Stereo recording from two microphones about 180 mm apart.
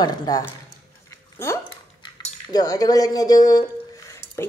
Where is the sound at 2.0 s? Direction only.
25° left (ahead or behind).